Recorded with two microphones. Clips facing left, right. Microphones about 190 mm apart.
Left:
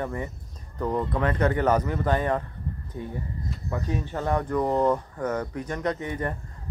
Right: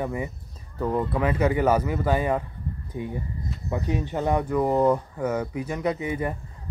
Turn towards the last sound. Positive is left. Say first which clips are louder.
# right 2 dB
turn(degrees=-10)  # may be behind; listen again after turning